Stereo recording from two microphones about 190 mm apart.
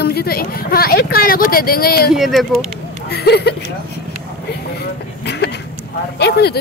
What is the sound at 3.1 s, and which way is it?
Speech, 60° left (ahead or behind).